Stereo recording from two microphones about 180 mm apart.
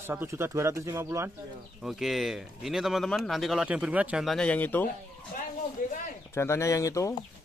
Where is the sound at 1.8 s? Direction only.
Centre (ahead or behind).